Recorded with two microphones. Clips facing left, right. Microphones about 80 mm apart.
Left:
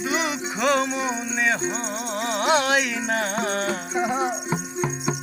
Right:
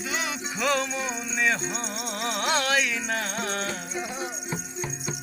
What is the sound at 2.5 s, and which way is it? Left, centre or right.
Music, left.